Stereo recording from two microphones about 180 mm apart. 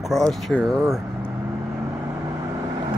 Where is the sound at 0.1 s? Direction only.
5° left (ahead or behind).